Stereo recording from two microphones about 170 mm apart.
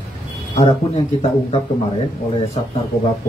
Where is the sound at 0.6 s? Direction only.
35° left (ahead or behind).